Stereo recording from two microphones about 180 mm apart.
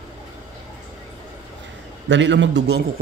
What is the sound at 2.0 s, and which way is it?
Speech, 90° right.